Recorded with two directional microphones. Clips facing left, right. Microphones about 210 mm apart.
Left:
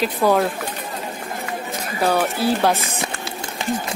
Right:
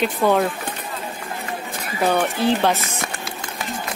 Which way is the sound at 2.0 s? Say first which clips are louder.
Even; 5° left (ahead or behind).